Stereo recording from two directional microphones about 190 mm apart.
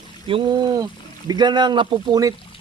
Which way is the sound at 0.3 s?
25° right (ahead or behind).